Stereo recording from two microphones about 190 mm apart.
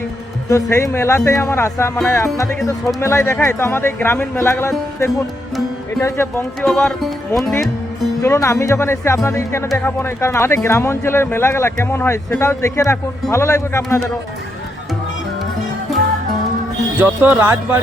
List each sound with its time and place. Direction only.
0.4 s speech: 15° left (ahead or behind)
8.2 s speech: 15° left (ahead or behind)
17.0 s speech: 10° right (ahead or behind)